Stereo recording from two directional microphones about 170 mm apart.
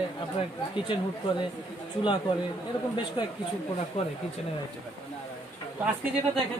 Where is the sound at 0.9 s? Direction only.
30° left (ahead or behind).